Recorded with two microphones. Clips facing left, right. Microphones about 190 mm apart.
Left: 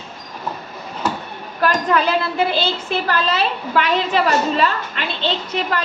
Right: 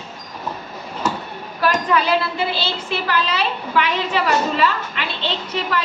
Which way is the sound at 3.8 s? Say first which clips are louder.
Left 3 dB; 40° left (ahead or behind).